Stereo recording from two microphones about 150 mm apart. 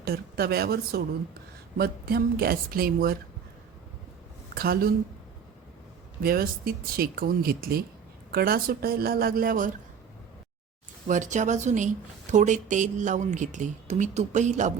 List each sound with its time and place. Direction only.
0.0 s a woman's voice: 90° right
4.5 s speech: 90° right
6.2 s speech: 80° right
11.1 s a woman's voice: 55° right (ahead or behind)